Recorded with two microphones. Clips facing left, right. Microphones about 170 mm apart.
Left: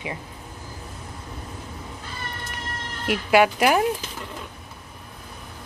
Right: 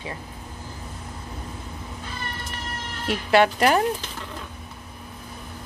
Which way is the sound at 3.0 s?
10° left (ahead or behind).